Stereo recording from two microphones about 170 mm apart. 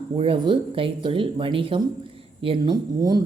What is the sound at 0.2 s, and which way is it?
Speech, 30° right (ahead or behind).